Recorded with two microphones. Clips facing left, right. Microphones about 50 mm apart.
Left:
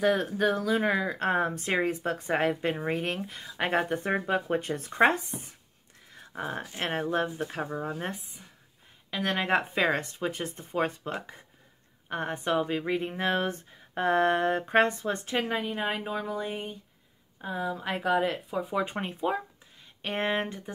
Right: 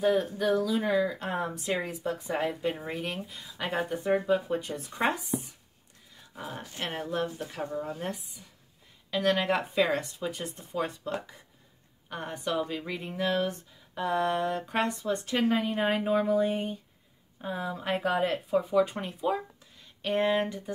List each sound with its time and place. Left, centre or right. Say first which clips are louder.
0.0 s speech: left 1 dB; left
0.5 s speech: even; left
3.0 s speech: left 3 dB; left
6.8 s speech: left 3 dB; left
12.1 s speech: left 4 dB; left
15.4 s a woman's voice: right 4 dB; centre
18.7 s speech: right 4 dB; left